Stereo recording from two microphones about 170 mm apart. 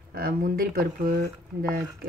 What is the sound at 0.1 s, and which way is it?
Speech, 60° right (ahead or behind).